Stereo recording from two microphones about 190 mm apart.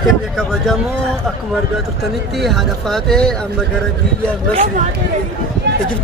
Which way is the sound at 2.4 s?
Centre (ahead or behind).